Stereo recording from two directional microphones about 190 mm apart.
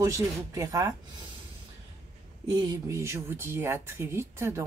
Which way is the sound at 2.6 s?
15° right (ahead or behind).